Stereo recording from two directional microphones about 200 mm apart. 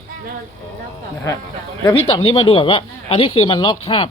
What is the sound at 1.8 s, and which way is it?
Speech, 25° left (ahead or behind).